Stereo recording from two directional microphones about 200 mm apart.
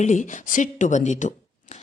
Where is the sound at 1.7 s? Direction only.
35° left (ahead or behind).